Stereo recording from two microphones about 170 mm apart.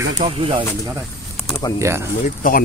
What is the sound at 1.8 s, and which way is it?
Speech, 15° right (ahead or behind).